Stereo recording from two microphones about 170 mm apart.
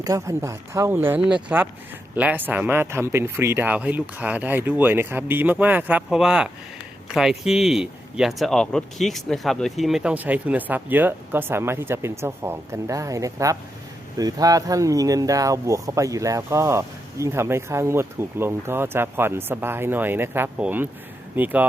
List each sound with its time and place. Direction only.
0.0 s speech: 20° right (ahead or behind)